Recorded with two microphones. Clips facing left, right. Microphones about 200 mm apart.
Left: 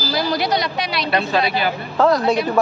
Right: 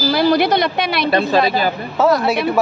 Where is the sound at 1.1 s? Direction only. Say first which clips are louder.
Right 3 dB; 40° right (ahead or behind).